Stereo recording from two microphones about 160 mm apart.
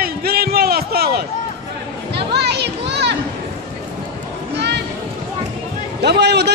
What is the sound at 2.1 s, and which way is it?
Children playing, 90° right.